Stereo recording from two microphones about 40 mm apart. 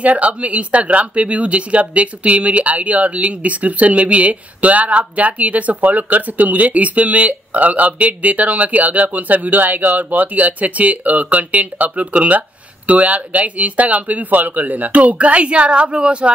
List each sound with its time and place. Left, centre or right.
0.0 s speech: right